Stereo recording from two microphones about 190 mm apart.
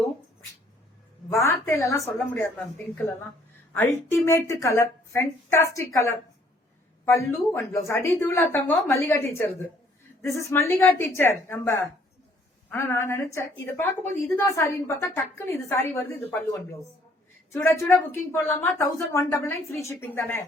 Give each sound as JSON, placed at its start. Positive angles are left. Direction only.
{"t": 1.3, "sound": "a woman's voice", "side_deg": 15}